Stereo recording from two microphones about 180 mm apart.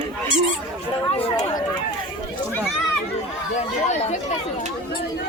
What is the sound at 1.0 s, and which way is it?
Chatter, 30° left (ahead or behind).